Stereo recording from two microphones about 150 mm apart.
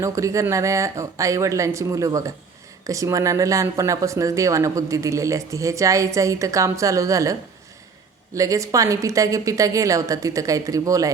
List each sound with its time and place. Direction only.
0.0 s speech: 20° right (ahead or behind)
8.4 s speech: 20° right (ahead or behind)